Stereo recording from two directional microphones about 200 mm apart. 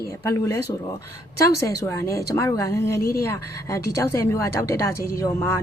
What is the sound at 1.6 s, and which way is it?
A woman's voice, 15° left (ahead or behind).